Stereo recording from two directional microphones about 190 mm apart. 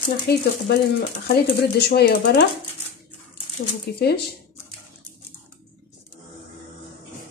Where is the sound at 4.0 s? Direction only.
60° left (ahead or behind).